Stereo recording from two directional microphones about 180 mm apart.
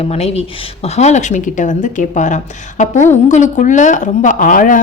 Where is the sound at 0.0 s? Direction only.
35° left (ahead or behind).